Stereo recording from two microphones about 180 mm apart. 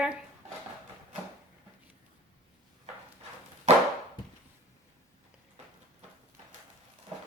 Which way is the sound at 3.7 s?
35° right (ahead or behind).